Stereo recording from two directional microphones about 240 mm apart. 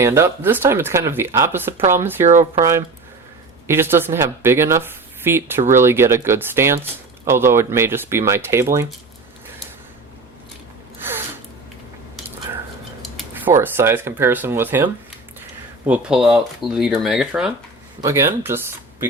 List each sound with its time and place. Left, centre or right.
0.0 s speech: centre
2.2 s speech: right
2.6 s speech: centre
11.0 s a sound: centre
13.0 s speech: centre
15.9 s speech: centre